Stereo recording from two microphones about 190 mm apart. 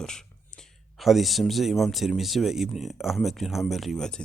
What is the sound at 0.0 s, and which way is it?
Speech, 5° left (ahead or behind).